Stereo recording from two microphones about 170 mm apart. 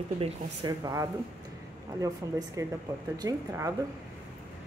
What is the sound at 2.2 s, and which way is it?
A woman's voice, 20° right (ahead or behind).